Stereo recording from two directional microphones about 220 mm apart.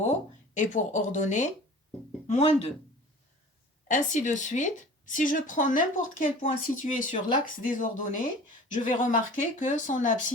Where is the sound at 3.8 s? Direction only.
35° left (ahead or behind).